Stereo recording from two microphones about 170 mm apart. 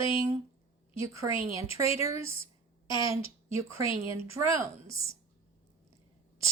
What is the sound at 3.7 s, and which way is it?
Speech, 15° right (ahead or behind).